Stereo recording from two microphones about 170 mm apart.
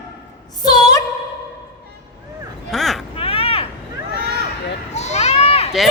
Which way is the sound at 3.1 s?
35° left (ahead or behind).